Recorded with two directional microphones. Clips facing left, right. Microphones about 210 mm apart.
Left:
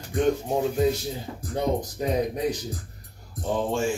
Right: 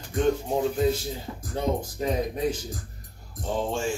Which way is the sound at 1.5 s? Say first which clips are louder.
Left 2 dB; 15° left (ahead or behind).